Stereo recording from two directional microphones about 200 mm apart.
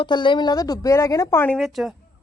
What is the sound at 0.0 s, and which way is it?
A woman's voice, 25° left (ahead or behind).